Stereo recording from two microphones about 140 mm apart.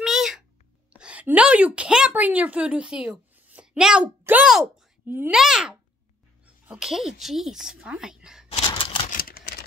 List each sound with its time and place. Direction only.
0.0 s meow: 5° right (ahead or behind)
0.9 s a woman's voice: 10° right (ahead or behind)
4.2 s a sound: 10° right (ahead or behind)
5.0 s a child's voice: 15° right (ahead or behind)
5.3 s a child's voice: 5° right (ahead or behind)
8.5 s a sound: 40° left (ahead or behind)
9.1 s typing: 90° left